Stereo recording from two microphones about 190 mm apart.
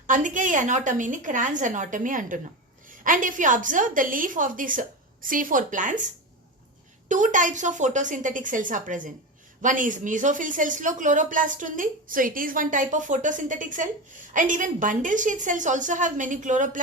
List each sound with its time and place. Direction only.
0.1 s speech: 45° right (ahead or behind)
7.1 s a woman's voice: 40° right (ahead or behind)